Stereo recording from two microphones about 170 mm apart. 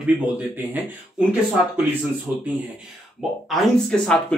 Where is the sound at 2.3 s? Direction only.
5° right (ahead or behind).